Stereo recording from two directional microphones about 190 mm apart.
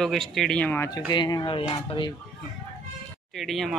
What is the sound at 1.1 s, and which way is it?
Speech, 25° left (ahead or behind).